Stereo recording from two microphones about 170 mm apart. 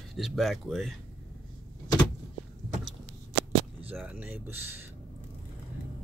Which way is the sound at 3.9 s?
10° right (ahead or behind).